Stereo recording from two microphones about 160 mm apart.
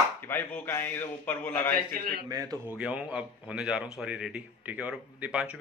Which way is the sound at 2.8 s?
5° right (ahead or behind).